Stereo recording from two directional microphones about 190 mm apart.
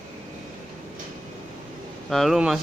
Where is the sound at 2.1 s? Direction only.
Centre (ahead or behind).